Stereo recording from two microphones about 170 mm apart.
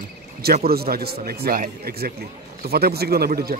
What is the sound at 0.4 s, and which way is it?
Speech, 65° right (ahead or behind).